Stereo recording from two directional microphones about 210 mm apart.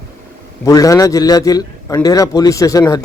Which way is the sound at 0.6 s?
15° left (ahead or behind).